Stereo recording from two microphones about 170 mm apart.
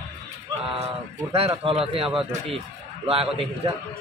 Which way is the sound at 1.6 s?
35° right (ahead or behind).